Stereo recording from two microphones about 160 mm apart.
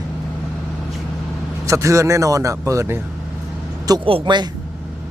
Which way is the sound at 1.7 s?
20° right (ahead or behind).